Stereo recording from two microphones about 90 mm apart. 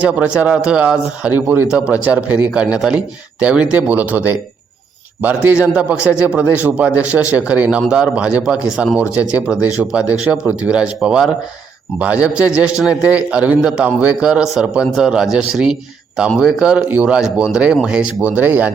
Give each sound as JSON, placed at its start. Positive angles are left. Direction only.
{"t": 0.0, "sound": "a man's voice", "side_deg": -15}
{"t": 8.7, "sound": "a man's voice", "side_deg": 0}